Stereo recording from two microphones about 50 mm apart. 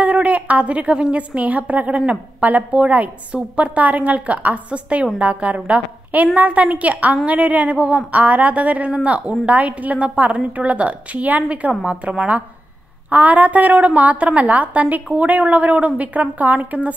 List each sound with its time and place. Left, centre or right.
0.0 s a woman's voice: right
13.1 s a woman's voice: right